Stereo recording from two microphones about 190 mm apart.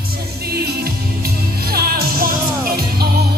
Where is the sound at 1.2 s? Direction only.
50° right (ahead or behind).